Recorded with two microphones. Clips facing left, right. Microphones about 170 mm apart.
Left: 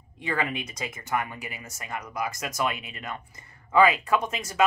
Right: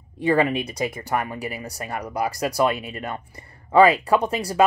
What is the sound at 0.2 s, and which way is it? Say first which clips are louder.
Speech: right 10 dB; 35° right (ahead or behind).